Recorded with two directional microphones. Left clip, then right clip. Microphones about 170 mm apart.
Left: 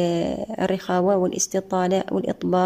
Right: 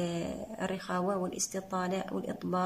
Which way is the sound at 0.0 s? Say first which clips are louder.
Left 13 dB; 40° left (ahead or behind).